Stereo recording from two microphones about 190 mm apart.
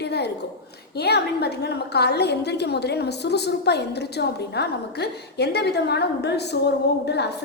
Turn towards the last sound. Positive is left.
turn(degrees=60)  # may be behind; listen again after turning